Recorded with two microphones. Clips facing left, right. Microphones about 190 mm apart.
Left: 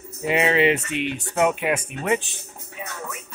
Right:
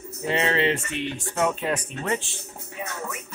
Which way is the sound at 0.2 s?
15° left (ahead or behind).